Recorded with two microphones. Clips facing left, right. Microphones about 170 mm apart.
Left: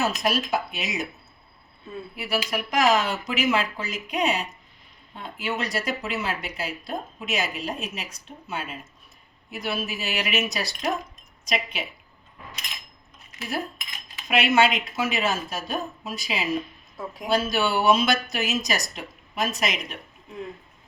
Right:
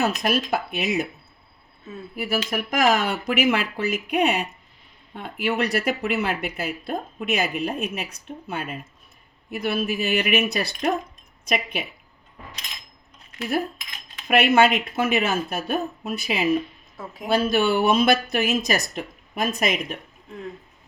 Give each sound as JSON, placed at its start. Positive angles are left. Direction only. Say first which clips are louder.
{"t": 0.0, "sound": "speech", "louder": "right 2 dB", "side_deg": -60}
{"t": 2.1, "sound": "speech", "louder": "right 3 dB", "side_deg": -50}
{"t": 14.3, "sound": "speech", "louder": "right 3 dB", "side_deg": -55}